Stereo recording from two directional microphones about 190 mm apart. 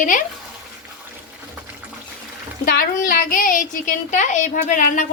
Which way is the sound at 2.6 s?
50° left (ahead or behind).